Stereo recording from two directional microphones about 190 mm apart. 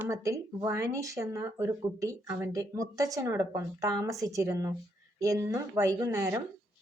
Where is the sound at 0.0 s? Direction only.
15° right (ahead or behind).